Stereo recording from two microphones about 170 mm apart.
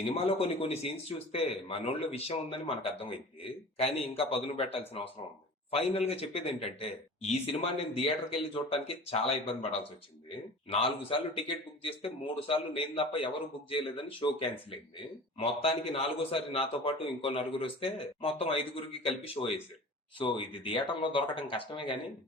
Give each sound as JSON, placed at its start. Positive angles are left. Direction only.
{"t": 0.1, "sound": "speech", "side_deg": 35}
{"t": 10.7, "sound": "speech", "side_deg": 35}